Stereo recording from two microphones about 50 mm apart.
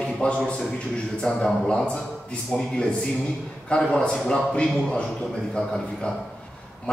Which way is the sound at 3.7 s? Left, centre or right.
Centre.